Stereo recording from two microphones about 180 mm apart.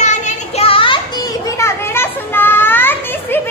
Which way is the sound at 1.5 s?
15° left (ahead or behind).